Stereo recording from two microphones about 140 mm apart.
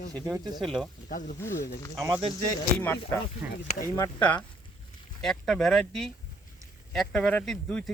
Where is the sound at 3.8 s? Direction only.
20° left (ahead or behind).